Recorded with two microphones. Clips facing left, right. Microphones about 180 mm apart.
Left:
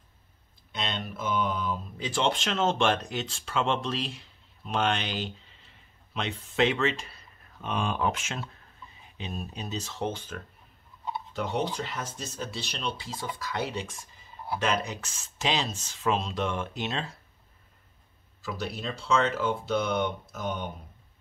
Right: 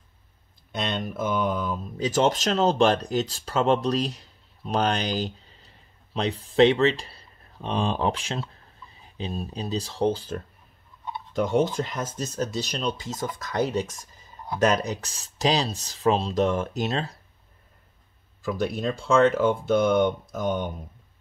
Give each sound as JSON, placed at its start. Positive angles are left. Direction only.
{"t": 0.7, "sound": "speech", "side_deg": -45}
{"t": 11.3, "sound": "speech", "side_deg": -45}
{"t": 18.4, "sound": "speech", "side_deg": -50}